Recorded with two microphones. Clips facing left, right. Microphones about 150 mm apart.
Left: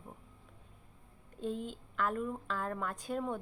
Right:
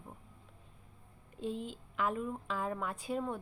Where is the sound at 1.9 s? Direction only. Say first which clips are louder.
Even; 5° right (ahead or behind).